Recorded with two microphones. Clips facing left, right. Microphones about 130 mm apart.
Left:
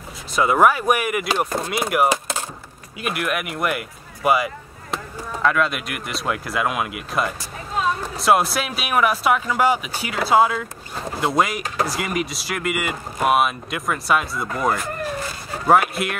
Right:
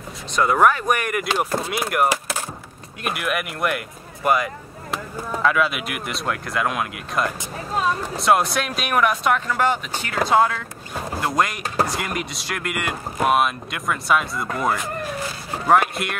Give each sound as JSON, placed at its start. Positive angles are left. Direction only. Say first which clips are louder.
{"t": 0.4, "sound": "speech", "louder": "left 1 dB", "side_deg": 5}
{"t": 2.0, "sound": "a sound", "louder": "left 1 dB", "side_deg": 20}
{"t": 3.0, "sound": "speech", "louder": "left 1 dB", "side_deg": 0}